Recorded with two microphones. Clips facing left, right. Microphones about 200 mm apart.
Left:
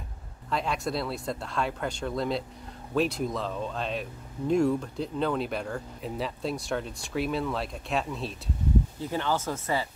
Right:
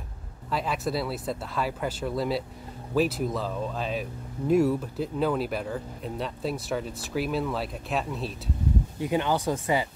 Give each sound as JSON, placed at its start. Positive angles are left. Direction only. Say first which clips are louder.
{"t": 0.5, "sound": "speech", "louder": "right 1 dB", "side_deg": 0}
{"t": 9.0, "sound": "speech", "louder": "right 4 dB", "side_deg": -15}